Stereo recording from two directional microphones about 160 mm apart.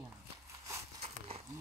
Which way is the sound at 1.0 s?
40° right (ahead or behind).